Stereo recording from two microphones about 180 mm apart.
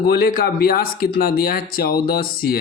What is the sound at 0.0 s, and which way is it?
Speech, 55° left (ahead or behind).